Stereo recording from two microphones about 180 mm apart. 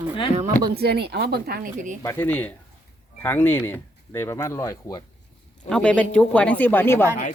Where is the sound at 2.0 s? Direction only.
15° left (ahead or behind).